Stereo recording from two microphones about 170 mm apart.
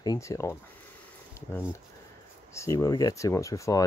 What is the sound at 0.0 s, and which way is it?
Speech, 20° left (ahead or behind).